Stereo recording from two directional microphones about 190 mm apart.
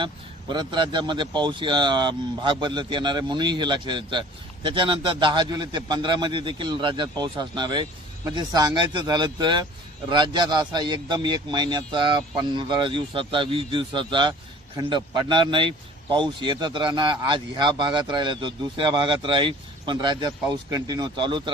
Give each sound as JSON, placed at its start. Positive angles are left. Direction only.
{"t": 0.0, "sound": "a man's voice", "side_deg": -25}